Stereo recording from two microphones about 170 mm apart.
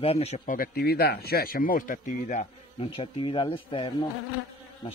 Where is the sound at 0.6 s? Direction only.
65° left (ahead or behind).